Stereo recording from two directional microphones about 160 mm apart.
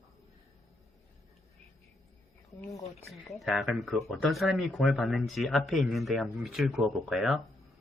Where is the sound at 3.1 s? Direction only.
Centre (ahead or behind).